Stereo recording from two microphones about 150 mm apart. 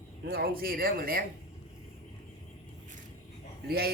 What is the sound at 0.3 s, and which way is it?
Speech, 90° right.